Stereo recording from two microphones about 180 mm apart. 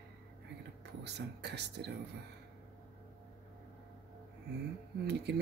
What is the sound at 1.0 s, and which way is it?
Speech, 70° right (ahead or behind).